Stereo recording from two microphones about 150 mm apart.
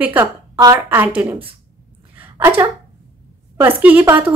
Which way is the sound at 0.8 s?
10° right (ahead or behind).